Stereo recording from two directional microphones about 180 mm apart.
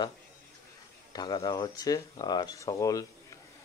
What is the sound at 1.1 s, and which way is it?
Speech, 20° left (ahead or behind).